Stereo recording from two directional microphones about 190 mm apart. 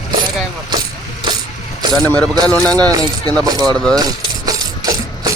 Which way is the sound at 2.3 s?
20° right (ahead or behind).